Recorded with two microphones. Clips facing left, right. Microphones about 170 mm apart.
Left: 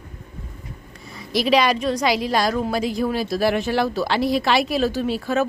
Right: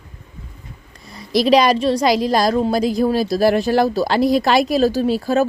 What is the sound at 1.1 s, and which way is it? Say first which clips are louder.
A woman's voice: right 5 dB; 35° right (ahead or behind).